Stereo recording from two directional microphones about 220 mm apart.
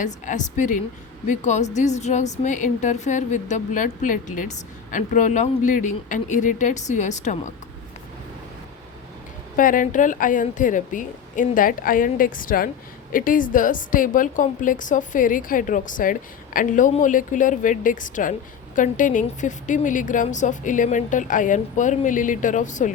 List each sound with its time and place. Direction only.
0.0 s a woman's voice: 35° left (ahead or behind)
9.6 s a woman's voice: 40° left (ahead or behind)